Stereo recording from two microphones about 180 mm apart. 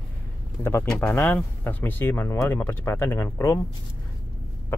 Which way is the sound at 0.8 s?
5° left (ahead or behind).